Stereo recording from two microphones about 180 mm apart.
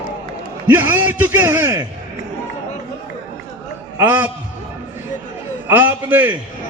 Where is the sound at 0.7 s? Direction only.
10° right (ahead or behind).